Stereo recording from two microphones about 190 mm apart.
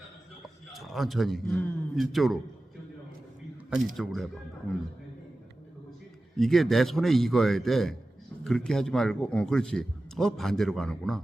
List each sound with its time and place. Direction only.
0.4 s a man's voice: centre (ahead or behind)
3.9 s a man's voice: centre (ahead or behind)
6.3 s a man's voice: centre (ahead or behind)